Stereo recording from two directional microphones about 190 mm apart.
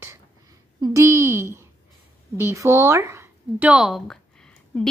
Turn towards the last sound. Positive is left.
turn(degrees=5)  # may be behind; listen again after turning